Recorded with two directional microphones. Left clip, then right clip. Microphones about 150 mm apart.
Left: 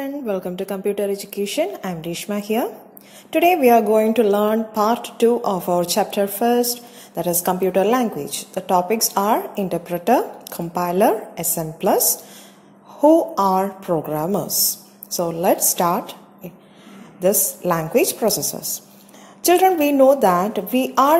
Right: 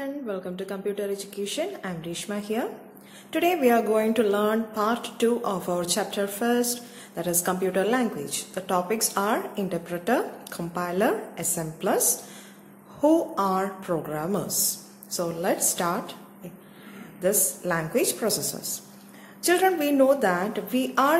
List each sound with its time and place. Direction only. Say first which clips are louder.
0.0 s a woman's voice: left 7 dB; 35° left (ahead or behind)
17.2 s speech: left 6 dB; 30° left (ahead or behind)